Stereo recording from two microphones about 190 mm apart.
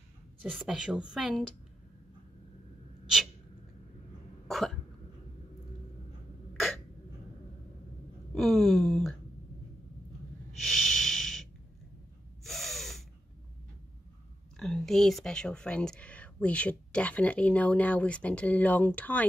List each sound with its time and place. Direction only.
0.5 s a woman's voice: centre (ahead or behind)
4.5 s cough: centre (ahead or behind)
8.4 s a sound: centre (ahead or behind)
10.6 s snort: centre (ahead or behind)
12.4 s gasp: centre (ahead or behind)
14.6 s speech: centre (ahead or behind)